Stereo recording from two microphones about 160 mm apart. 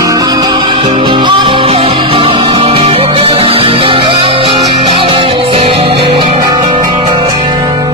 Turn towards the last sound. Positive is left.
turn(degrees=-35)  # may be behind; listen again after turning